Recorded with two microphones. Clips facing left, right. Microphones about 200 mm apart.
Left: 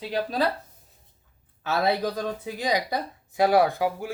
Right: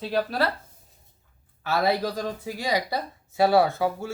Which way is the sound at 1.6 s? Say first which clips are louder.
Even; 20° left (ahead or behind).